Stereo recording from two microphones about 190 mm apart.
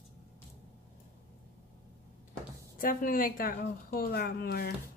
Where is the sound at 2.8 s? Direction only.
45° left (ahead or behind).